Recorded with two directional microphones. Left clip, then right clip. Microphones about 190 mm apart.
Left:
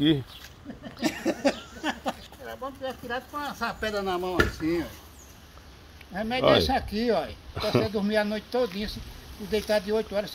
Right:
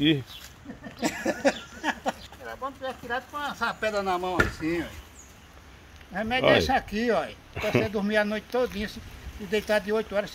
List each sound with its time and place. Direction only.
1.0 s a sound: 30° right (ahead or behind)
2.4 s speech: 5° right (ahead or behind)
6.1 s speech: 5° left (ahead or behind)